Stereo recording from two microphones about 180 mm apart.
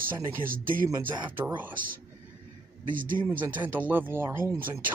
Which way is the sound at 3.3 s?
10° right (ahead or behind).